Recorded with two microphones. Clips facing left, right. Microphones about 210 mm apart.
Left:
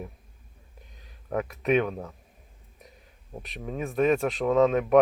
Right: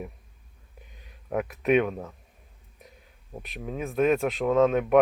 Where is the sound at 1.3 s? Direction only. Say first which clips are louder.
Right 1 dB; 5° right (ahead or behind).